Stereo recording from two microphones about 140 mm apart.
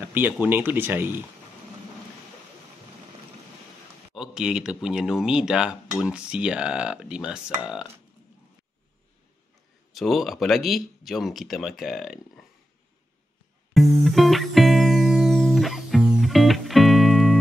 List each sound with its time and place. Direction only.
0.0 s speech: 15° right (ahead or behind)
4.1 s speech: 5° right (ahead or behind)
9.9 s speech: centre (ahead or behind)
13.7 s music: centre (ahead or behind)